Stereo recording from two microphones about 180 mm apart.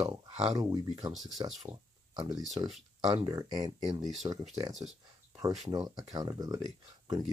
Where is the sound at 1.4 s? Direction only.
25° right (ahead or behind).